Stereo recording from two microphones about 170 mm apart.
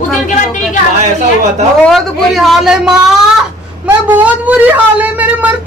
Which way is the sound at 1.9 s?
Centre (ahead or behind).